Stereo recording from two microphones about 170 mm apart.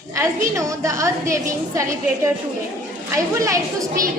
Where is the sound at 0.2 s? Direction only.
15° right (ahead or behind).